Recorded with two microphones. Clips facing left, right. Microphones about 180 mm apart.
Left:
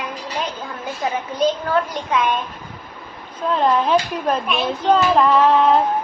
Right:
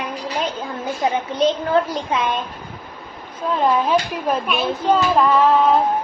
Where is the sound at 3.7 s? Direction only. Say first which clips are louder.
Even; 5° right (ahead or behind).